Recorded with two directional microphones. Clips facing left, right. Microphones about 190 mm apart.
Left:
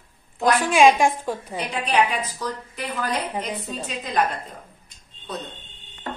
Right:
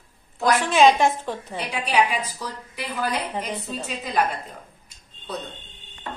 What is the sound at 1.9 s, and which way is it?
A woman's voice, 10° right (ahead or behind).